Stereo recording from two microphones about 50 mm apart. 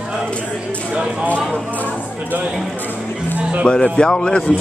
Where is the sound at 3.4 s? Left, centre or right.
Right.